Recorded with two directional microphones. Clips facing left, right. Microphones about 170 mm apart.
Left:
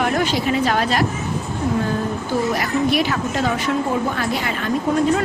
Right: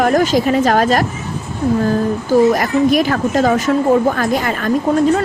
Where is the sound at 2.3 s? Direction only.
45° right (ahead or behind).